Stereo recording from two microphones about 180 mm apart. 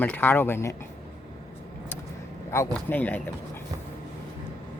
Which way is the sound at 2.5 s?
15° left (ahead or behind).